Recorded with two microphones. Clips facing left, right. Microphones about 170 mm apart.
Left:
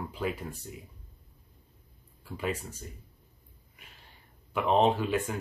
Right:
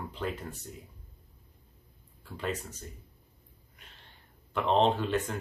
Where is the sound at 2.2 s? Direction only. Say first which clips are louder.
Left 1 dB; 10° left (ahead or behind).